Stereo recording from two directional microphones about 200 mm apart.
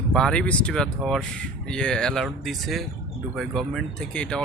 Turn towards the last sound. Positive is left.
turn(degrees=5)  # may be behind; listen again after turning